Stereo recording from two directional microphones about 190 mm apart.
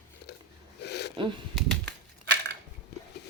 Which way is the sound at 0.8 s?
60° left (ahead or behind).